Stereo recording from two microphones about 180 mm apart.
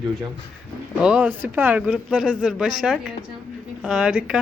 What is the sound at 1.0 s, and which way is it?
Speech, 5° right (ahead or behind).